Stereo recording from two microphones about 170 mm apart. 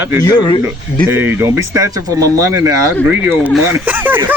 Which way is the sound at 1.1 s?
15° right (ahead or behind).